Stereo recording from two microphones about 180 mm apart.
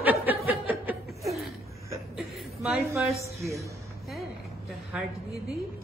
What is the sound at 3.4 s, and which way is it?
Chuckle, 15° right (ahead or behind).